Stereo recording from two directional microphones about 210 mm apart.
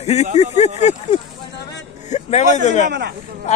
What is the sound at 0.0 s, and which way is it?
Speech, 30° left (ahead or behind).